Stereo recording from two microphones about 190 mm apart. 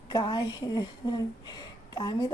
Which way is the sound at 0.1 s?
20° left (ahead or behind).